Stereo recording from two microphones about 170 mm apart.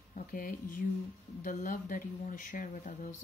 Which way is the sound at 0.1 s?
55° left (ahead or behind).